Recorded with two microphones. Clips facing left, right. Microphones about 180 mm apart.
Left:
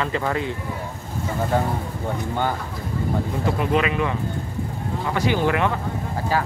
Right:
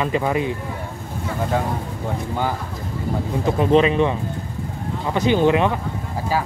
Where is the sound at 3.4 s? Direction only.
25° right (ahead or behind).